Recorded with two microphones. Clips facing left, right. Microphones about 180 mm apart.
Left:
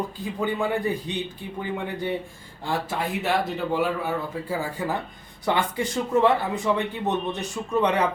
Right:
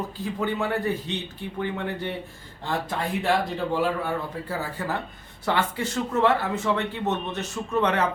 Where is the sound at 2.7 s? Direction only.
5° left (ahead or behind).